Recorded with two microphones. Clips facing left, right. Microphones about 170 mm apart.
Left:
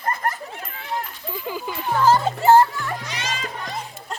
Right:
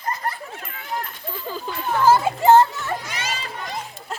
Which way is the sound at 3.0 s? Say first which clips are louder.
Left 1 dB; 10° right (ahead or behind).